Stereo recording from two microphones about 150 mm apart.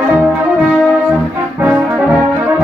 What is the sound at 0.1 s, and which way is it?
French horn, 5° right (ahead or behind).